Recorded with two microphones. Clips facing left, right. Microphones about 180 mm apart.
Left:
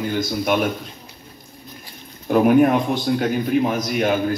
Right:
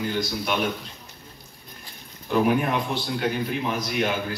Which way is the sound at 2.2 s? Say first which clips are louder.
Left 7 dB; 50° left (ahead or behind).